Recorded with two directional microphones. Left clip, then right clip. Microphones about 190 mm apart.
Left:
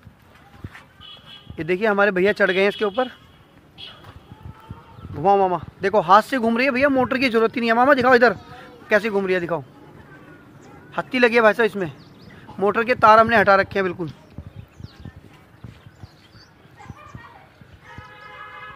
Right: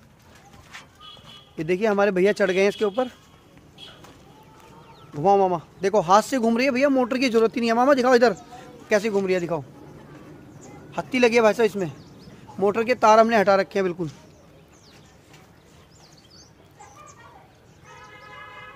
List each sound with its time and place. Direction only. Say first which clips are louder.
1.6 s speech: left 2 dB; 5° right (ahead or behind)
3.8 s clip-clop: left 5 dB; 70° right (ahead or behind)
5.2 s speech: left 2 dB; centre (ahead or behind)
10.9 s speech: left 2 dB; centre (ahead or behind)